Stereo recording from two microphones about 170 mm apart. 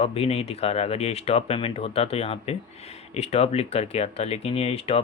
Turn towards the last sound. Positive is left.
turn(degrees=35)  # may be behind; listen again after turning